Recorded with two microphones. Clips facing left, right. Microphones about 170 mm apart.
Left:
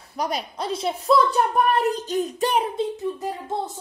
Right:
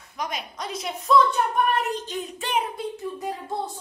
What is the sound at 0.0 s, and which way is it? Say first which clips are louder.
A woman's voice: left 5 dB; 35° left (ahead or behind).